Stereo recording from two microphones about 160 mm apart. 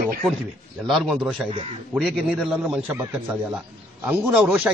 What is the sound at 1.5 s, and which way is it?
Speech, 40° right (ahead or behind).